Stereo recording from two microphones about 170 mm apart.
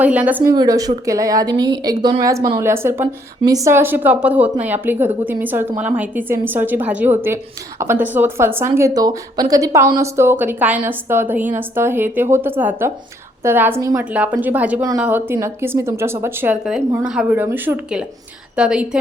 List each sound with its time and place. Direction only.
0.0 s a woman's voice: 10° right (ahead or behind)
0.5 s a woman's voice: 20° right (ahead or behind); by 18.9 s 5° right (ahead or behind)